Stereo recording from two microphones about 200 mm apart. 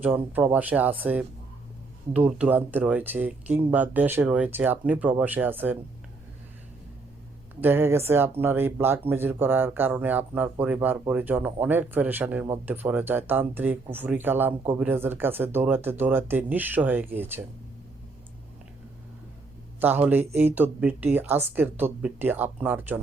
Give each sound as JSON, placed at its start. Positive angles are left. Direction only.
{"t": 0.0, "sound": "speech", "side_deg": -10}
{"t": 7.6, "sound": "speech", "side_deg": -10}
{"t": 19.8, "sound": "speech", "side_deg": -10}